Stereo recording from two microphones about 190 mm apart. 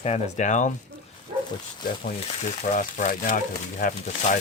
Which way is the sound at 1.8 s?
50° left (ahead or behind).